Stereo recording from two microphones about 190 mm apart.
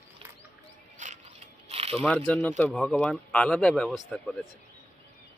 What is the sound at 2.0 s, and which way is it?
A man's voice, 5° left (ahead or behind).